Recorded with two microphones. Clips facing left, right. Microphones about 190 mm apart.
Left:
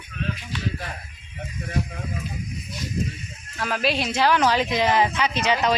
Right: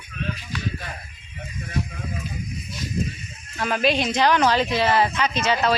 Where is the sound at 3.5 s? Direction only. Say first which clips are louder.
Right 3 dB; centre (ahead or behind).